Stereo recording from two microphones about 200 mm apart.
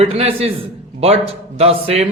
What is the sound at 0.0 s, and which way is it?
A man's voice, 30° right (ahead or behind).